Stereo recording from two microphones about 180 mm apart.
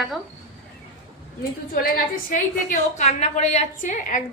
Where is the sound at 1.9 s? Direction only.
50° left (ahead or behind).